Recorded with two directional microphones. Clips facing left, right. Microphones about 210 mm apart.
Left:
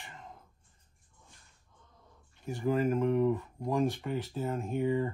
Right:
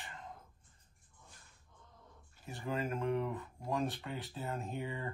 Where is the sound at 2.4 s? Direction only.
Centre (ahead or behind).